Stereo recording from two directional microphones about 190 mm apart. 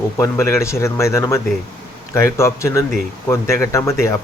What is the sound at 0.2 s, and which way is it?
Speech, 15° left (ahead or behind).